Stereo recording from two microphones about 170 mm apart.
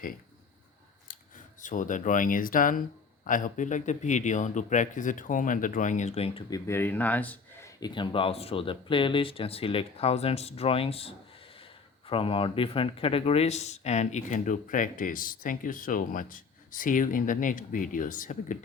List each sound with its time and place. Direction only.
1.6 s speech: 50° left (ahead or behind)
6.5 s speech: 15° left (ahead or behind)
7.8 s speech: 25° left (ahead or behind); by 18.5 s 50° left (ahead or behind)